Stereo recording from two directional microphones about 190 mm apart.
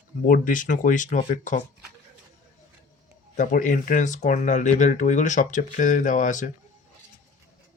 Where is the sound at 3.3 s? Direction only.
40° left (ahead or behind).